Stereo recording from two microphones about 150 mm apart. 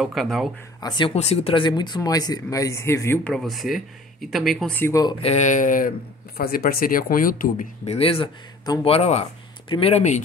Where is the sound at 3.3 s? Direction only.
Centre (ahead or behind).